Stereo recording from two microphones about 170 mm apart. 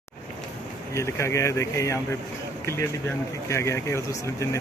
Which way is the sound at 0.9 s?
15° left (ahead or behind).